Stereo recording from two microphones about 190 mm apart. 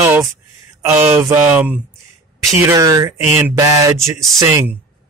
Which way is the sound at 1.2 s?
10° right (ahead or behind).